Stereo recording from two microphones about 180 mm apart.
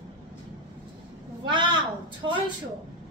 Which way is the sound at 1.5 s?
25° right (ahead or behind).